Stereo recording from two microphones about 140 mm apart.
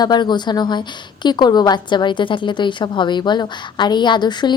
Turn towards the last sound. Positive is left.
turn(degrees=30)  # may be behind; listen again after turning